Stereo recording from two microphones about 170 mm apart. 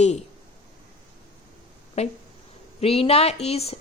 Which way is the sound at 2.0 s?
40° left (ahead or behind).